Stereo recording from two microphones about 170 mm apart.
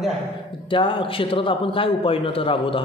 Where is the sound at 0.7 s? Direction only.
30° left (ahead or behind).